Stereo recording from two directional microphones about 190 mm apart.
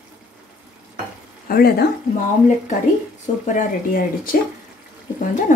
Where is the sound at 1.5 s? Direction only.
55° left (ahead or behind).